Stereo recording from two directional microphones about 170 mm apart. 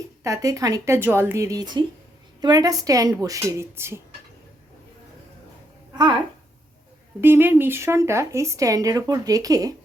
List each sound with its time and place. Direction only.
0.2 s speech: 20° right (ahead or behind)
7.2 s speech: 10° right (ahead or behind)